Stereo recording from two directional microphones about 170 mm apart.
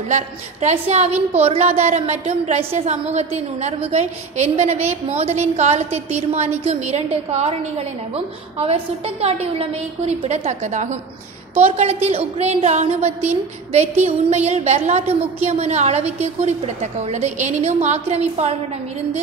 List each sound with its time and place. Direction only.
0.1 s a woman's voice: 40° right (ahead or behind)